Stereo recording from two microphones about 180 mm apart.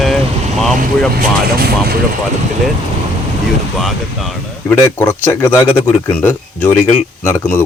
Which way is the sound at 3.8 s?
Centre (ahead or behind).